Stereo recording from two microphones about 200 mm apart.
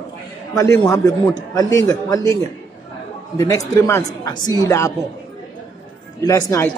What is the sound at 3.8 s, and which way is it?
Speech, 15° left (ahead or behind).